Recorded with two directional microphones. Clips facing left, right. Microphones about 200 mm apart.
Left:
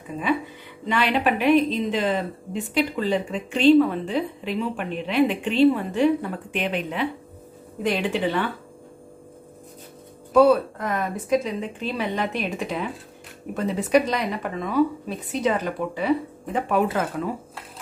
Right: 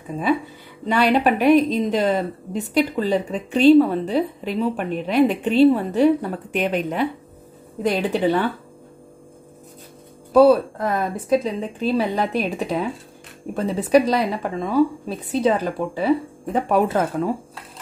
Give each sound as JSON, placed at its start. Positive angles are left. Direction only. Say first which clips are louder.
{"t": 0.8, "sound": "a woman's voice", "louder": "right 4 dB", "side_deg": -40}
{"t": 10.3, "sound": "a woman's voice", "louder": "right 3 dB", "side_deg": -35}